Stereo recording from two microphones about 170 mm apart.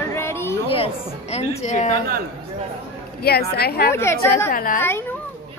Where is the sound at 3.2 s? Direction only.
65° left (ahead or behind).